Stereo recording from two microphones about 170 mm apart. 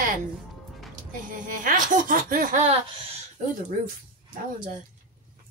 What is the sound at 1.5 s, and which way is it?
Speech, 50° right (ahead or behind).